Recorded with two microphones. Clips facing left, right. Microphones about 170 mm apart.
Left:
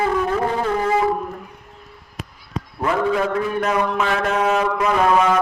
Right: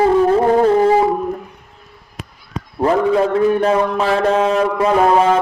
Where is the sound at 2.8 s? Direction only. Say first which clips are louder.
Right 6 dB; 35° right (ahead or behind).